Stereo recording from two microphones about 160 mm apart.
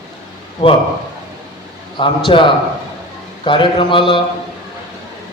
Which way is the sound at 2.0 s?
30° left (ahead or behind).